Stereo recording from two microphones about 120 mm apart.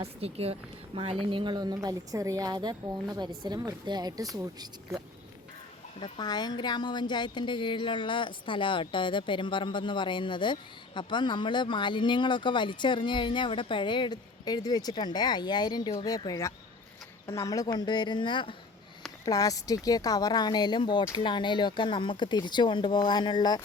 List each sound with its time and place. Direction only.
0.0 s speech: 55° right (ahead or behind)
1.2 s speech: 45° right (ahead or behind)
6.0 s speech: 35° left (ahead or behind)
19.2 s speech: 30° left (ahead or behind)